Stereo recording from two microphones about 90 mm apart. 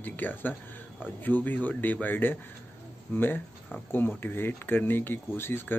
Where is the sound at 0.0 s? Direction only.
20° left (ahead or behind).